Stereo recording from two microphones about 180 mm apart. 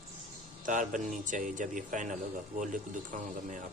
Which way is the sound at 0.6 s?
45° right (ahead or behind).